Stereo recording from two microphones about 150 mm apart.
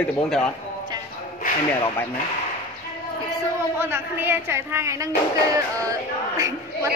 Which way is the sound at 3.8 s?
15° right (ahead or behind).